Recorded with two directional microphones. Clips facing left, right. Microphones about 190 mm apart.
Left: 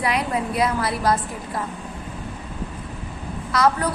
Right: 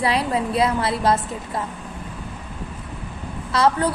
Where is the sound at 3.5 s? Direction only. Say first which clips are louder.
Right 1 dB; 30° right (ahead or behind).